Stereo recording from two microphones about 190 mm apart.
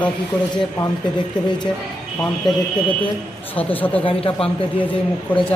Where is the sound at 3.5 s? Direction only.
10° left (ahead or behind).